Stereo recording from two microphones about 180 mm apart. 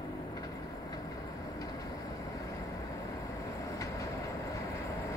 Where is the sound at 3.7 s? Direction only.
20° left (ahead or behind).